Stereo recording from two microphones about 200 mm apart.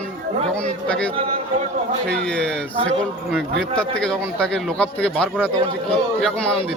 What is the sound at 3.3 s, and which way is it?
A man's voice, 5° left (ahead or behind).